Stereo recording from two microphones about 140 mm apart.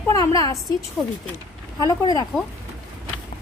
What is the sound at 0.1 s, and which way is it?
Speech, 25° left (ahead or behind).